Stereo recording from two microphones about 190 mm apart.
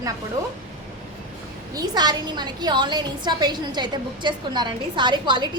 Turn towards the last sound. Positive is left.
turn(degrees=-25)  # may be behind; listen again after turning